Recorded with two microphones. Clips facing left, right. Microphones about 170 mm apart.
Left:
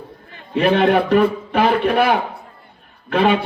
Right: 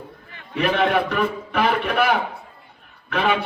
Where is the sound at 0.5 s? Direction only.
30° left (ahead or behind).